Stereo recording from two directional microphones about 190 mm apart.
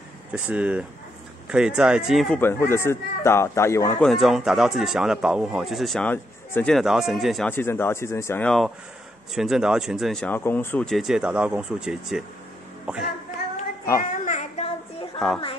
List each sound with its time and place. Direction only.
0.3 s speech: 5° right (ahead or behind); by 4.0 s 15° left (ahead or behind)
4.0 s speech: centre (ahead or behind)
7.5 s speech: 10° left (ahead or behind); by 13.1 s 5° right (ahead or behind)
14.0 s child singing: 40° left (ahead or behind)
15.1 s speech: centre (ahead or behind)